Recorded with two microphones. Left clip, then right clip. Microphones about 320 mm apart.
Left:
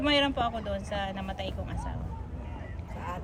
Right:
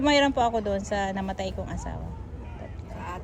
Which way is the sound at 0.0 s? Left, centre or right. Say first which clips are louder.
Right 5 dB; centre.